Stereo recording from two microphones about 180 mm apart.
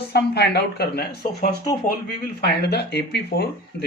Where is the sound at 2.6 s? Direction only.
70° left (ahead or behind).